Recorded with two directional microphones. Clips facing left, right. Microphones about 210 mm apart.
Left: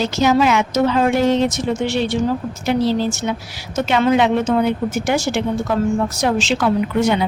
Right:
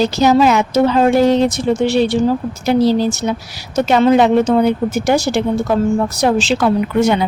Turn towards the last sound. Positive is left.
turn(degrees=-40)  # may be behind; listen again after turning